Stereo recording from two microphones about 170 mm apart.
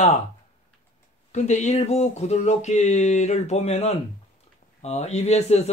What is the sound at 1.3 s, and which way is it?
Speech, 45° left (ahead or behind).